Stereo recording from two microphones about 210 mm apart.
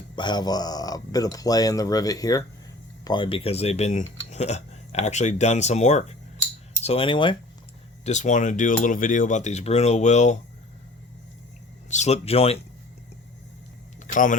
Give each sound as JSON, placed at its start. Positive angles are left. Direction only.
{"t": 0.2, "sound": "speech", "side_deg": 20}
{"t": 8.0, "sound": "speech", "side_deg": 35}
{"t": 11.9, "sound": "speech", "side_deg": 30}
{"t": 14.1, "sound": "speech", "side_deg": 40}